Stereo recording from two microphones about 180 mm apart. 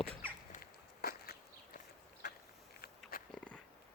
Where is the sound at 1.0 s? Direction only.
55° left (ahead or behind).